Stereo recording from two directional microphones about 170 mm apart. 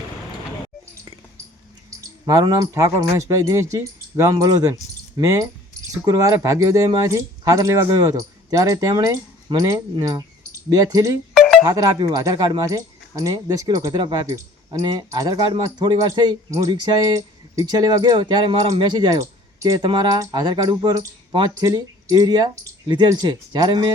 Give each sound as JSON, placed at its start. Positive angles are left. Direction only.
{"t": 2.2, "sound": "speech", "side_deg": -20}
{"t": 11.3, "sound": "music", "side_deg": 0}
{"t": 11.6, "sound": "speech", "side_deg": -20}